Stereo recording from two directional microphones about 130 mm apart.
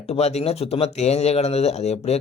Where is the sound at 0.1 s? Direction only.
55° left (ahead or behind).